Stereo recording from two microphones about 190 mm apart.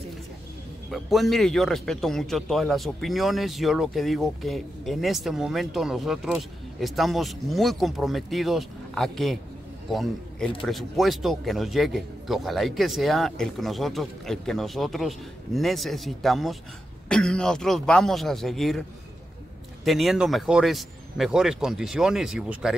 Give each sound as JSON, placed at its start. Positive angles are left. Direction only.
{"t": 0.9, "sound": "a man's voice", "side_deg": 0}